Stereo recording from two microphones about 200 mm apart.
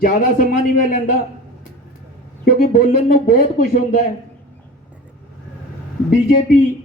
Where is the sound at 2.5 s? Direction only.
45° left (ahead or behind).